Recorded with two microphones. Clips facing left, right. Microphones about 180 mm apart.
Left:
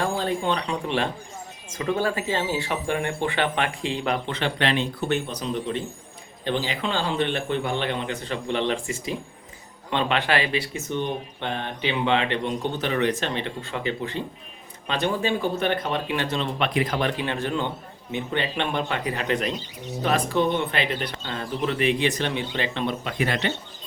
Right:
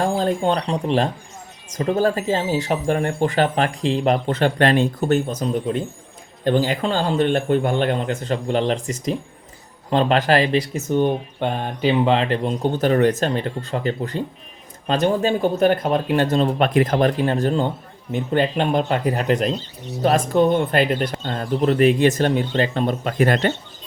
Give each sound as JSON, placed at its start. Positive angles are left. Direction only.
{"t": 0.0, "sound": "speech", "side_deg": -40}